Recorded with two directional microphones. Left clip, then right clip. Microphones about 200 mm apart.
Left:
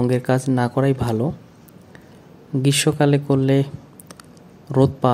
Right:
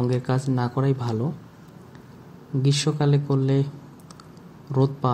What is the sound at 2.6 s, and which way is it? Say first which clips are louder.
Speech: left 6 dB; 40° left (ahead or behind).